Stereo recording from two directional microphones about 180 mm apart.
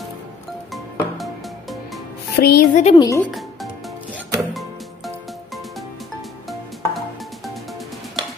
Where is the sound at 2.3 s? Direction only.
60° left (ahead or behind).